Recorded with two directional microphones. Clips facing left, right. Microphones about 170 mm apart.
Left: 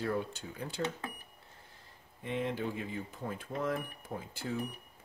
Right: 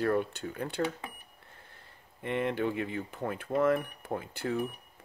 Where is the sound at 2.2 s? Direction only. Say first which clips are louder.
Right 4 dB; 65° right (ahead or behind).